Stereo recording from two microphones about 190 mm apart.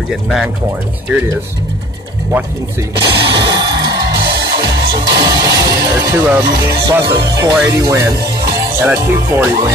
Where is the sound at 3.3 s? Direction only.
25° right (ahead or behind).